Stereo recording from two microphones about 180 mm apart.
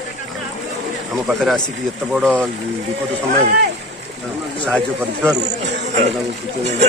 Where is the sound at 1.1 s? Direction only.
Centre (ahead or behind).